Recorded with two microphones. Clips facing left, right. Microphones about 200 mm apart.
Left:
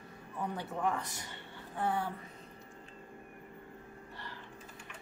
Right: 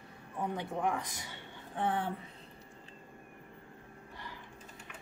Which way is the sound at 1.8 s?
25° right (ahead or behind).